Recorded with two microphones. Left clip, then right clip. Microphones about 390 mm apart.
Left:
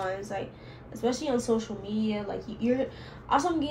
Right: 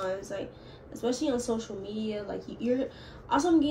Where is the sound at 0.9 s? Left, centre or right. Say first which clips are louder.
Left 1 dB; centre.